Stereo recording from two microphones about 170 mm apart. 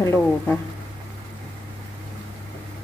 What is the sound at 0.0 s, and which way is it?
Speech, 15° left (ahead or behind).